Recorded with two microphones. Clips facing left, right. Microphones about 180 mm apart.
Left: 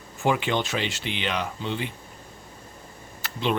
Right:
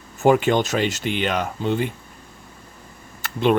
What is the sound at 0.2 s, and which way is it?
Speech, 45° right (ahead or behind).